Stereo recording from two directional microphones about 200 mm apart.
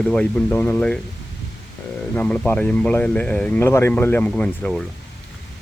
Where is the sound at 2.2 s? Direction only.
5° left (ahead or behind).